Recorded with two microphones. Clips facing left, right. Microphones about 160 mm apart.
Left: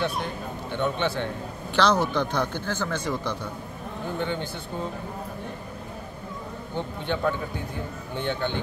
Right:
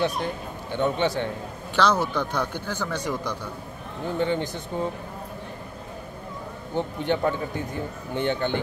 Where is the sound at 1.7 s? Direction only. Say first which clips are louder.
Even; 5° right (ahead or behind).